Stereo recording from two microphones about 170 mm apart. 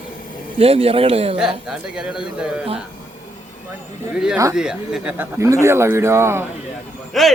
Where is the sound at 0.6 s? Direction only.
35° right (ahead or behind).